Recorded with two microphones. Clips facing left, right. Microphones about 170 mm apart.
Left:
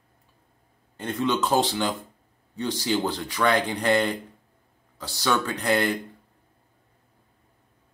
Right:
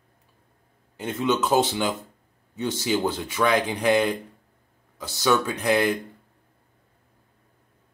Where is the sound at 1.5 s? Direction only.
20° right (ahead or behind).